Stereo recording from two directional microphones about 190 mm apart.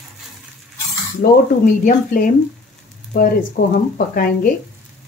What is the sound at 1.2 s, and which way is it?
A woman's voice, 50° left (ahead or behind).